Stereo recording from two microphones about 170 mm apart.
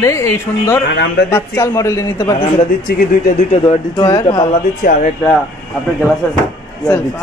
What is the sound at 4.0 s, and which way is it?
Speech, 25° left (ahead or behind).